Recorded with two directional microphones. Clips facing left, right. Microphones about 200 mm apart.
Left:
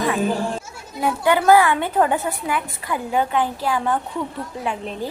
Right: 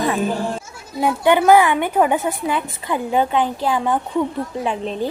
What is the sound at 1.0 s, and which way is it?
A woman's voice, 20° right (ahead or behind).